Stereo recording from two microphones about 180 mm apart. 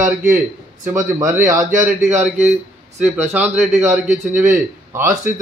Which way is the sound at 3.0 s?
10° right (ahead or behind).